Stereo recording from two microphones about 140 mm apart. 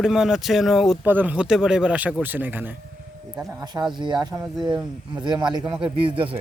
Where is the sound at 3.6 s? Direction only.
30° right (ahead or behind).